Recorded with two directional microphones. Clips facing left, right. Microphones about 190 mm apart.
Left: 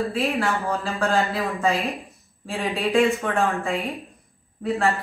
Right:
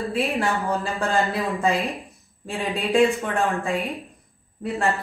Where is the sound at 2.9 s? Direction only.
15° right (ahead or behind).